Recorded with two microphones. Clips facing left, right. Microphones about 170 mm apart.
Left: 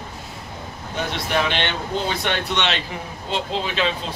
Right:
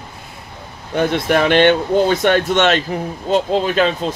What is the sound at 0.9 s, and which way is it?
Speech, 55° right (ahead or behind).